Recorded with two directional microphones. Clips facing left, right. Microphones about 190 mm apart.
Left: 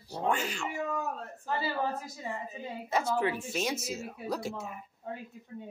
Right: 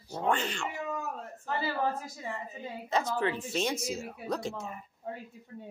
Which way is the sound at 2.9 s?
10° left (ahead or behind).